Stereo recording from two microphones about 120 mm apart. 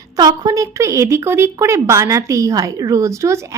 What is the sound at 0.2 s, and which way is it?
A woman's voice, 30° right (ahead or behind).